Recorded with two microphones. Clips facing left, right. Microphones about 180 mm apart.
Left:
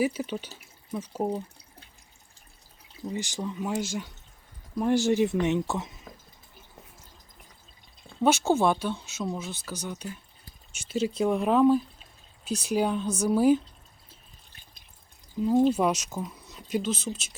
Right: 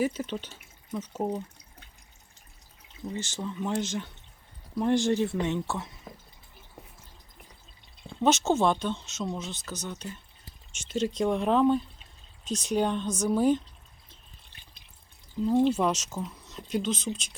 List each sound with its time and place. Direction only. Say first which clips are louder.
0.0 s speech: left 1 dB; 10° left (ahead or behind)
3.1 s speech: left 2 dB; 15° left (ahead or behind)
8.2 s speech: left 1 dB; 10° left (ahead or behind)
15.4 s speech: left 1 dB; 5° left (ahead or behind)